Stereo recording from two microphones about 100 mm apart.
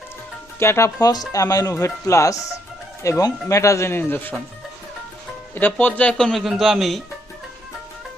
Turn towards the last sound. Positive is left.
turn(degrees=0)  # may be behind; listen again after turning